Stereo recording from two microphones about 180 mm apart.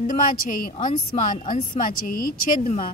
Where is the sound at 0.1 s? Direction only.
45° left (ahead or behind).